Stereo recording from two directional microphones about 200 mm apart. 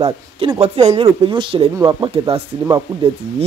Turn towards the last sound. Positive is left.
turn(degrees=-20)  # may be behind; listen again after turning